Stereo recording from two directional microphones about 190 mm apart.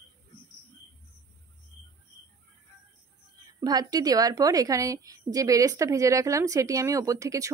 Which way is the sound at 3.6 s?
20° right (ahead or behind).